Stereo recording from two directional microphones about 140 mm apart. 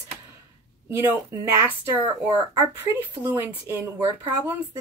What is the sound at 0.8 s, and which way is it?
A woman's voice, 15° right (ahead or behind).